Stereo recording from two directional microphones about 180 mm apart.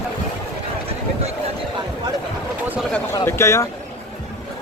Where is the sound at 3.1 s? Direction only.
15° left (ahead or behind).